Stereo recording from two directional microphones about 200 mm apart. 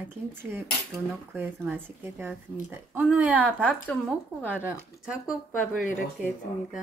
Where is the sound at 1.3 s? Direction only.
10° right (ahead or behind).